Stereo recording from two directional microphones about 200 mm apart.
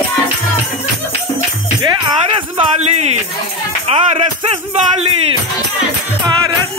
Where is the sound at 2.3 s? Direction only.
30° right (ahead or behind).